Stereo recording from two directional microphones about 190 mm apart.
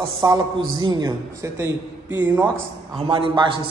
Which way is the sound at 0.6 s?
90° right.